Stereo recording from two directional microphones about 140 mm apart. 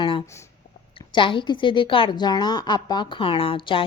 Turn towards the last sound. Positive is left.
turn(degrees=35)  # may be behind; listen again after turning